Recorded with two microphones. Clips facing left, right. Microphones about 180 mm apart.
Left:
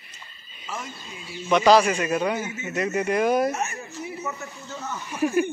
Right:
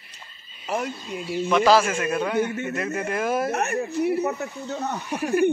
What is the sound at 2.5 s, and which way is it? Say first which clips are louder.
Speech: right 6 dB; 60° right (ahead or behind).